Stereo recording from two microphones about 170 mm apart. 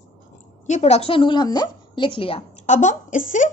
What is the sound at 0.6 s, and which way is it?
A woman's voice, 40° left (ahead or behind).